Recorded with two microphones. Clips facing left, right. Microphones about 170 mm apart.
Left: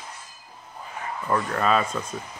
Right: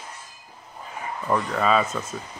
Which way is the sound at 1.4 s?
Centre (ahead or behind).